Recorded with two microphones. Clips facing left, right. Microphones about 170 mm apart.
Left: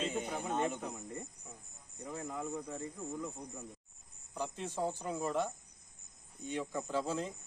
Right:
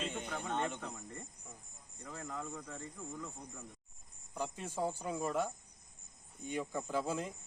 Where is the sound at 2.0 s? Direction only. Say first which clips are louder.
Left 4 dB; 20° left (ahead or behind).